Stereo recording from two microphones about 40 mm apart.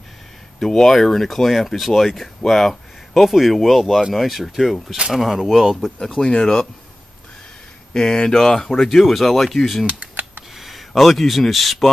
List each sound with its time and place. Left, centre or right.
0.6 s speech: centre
3.2 s speech: centre
6.0 s speech: centre
7.9 s speech: centre
10.5 s a sound: centre
10.9 s speech: centre